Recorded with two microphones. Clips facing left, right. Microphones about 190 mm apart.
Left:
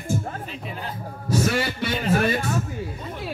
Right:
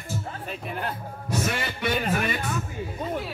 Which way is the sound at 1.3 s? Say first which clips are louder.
Left 6 dB; 35° left (ahead or behind).